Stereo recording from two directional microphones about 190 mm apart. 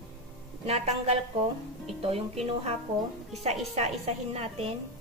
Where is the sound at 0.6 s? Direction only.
35° right (ahead or behind).